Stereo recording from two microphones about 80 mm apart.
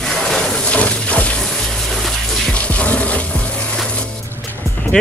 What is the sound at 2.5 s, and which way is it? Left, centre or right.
Music, centre.